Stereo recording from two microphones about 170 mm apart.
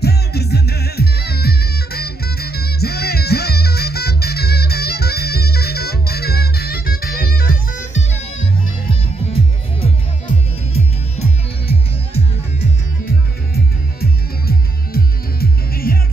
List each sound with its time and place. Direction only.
0.0 s music: 70° left (ahead or behind); by 8.0 s 55° left (ahead or behind)
9.3 s music: 35° left (ahead or behind)
14.9 s music: 60° left (ahead or behind)